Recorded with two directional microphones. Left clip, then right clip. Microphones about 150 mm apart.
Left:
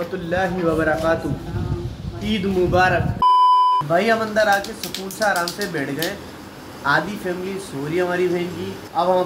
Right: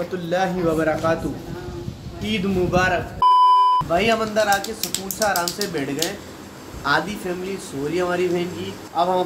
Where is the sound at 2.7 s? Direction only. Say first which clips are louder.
Left 2 dB; centre (ahead or behind).